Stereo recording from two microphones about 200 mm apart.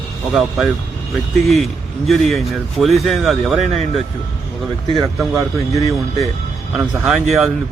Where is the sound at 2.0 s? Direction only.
Centre (ahead or behind).